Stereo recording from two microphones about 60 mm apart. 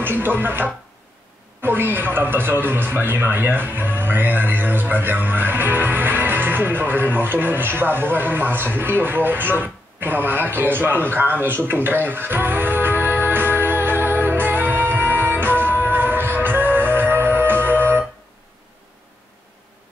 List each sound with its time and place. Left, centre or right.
0.0 s a man's voice: right